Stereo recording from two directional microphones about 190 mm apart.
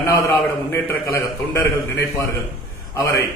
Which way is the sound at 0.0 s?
15° left (ahead or behind).